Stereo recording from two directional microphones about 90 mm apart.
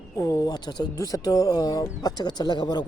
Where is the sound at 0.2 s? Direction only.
40° left (ahead or behind); by 0.9 s 55° left (ahead or behind).